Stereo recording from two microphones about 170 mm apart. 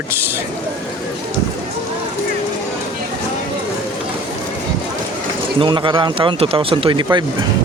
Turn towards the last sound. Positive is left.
turn(degrees=-25)  # may be behind; listen again after turning